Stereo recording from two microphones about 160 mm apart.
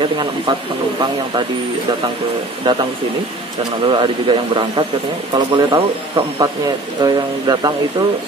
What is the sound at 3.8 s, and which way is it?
Speech, 30° right (ahead or behind).